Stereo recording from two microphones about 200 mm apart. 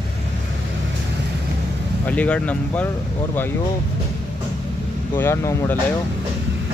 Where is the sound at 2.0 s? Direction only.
5° left (ahead or behind).